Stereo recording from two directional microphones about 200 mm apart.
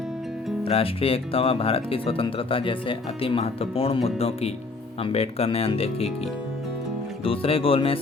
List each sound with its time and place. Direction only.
0.6 s speech: 30° left (ahead or behind)
7.3 s speech: 30° left (ahead or behind)